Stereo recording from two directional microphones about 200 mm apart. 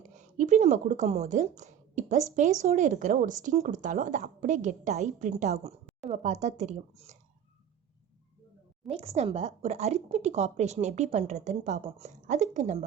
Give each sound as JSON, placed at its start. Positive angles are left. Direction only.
{"t": 0.1, "sound": "speech", "side_deg": -40}
{"t": 8.9, "sound": "speech", "side_deg": -30}